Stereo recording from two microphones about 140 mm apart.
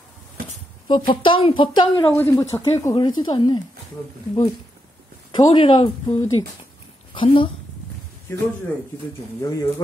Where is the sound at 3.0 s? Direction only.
30° left (ahead or behind).